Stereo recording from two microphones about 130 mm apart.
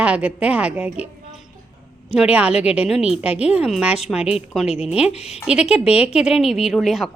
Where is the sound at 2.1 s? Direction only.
10° right (ahead or behind).